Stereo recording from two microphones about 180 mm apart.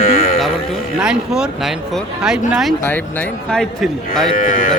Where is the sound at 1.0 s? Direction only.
5° right (ahead or behind).